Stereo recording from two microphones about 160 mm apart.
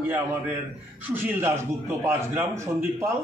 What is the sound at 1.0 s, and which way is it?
A man's voice, 15° right (ahead or behind).